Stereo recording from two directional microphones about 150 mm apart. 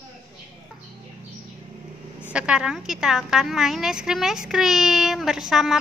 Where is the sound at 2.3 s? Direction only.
5° right (ahead or behind).